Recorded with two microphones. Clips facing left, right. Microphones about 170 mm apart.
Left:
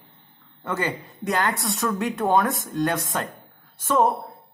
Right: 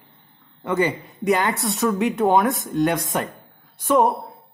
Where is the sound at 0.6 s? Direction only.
15° right (ahead or behind).